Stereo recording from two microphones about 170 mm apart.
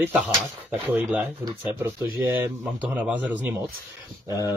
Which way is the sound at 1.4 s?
20° right (ahead or behind).